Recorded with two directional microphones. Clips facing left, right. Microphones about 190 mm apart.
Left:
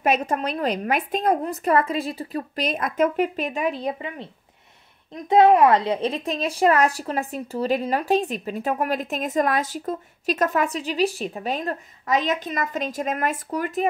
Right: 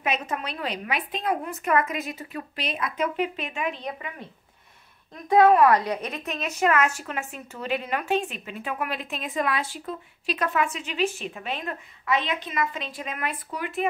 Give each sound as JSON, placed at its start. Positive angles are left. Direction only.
{"t": 0.0, "sound": "speech", "side_deg": 40}